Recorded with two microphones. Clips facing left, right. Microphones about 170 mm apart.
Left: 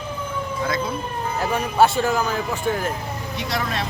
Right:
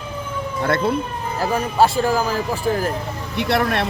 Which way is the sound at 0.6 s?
65° right (ahead or behind).